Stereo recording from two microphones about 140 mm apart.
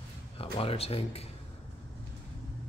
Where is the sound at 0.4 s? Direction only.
45° left (ahead or behind).